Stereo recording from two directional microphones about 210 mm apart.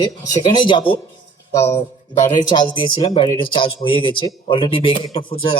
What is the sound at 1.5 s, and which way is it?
Speech, 10° left (ahead or behind).